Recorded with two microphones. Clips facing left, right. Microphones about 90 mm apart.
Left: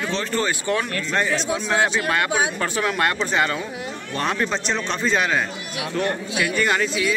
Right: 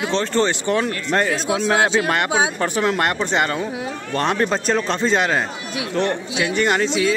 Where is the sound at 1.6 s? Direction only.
20° right (ahead or behind).